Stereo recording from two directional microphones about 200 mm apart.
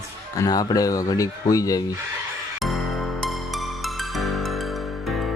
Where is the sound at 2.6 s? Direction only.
Centre (ahead or behind).